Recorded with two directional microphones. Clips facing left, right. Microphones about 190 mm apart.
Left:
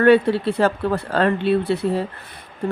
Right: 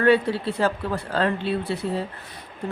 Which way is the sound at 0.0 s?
60° left (ahead or behind).